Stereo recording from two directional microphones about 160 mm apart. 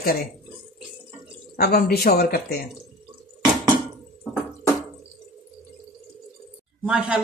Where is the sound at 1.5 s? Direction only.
75° left (ahead or behind).